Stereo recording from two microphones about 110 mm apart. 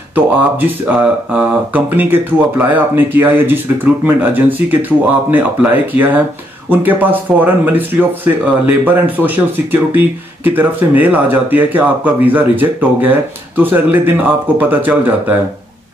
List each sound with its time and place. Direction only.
0.1 s speech: 15° right (ahead or behind)